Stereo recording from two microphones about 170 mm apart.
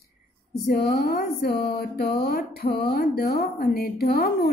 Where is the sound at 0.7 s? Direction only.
65° left (ahead or behind).